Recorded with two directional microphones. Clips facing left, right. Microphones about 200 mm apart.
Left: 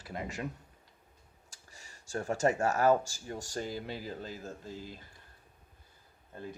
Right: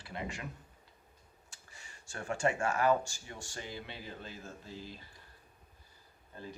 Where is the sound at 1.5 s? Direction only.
40° left (ahead or behind).